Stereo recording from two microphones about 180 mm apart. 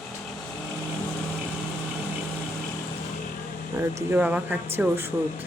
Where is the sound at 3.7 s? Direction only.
10° right (ahead or behind).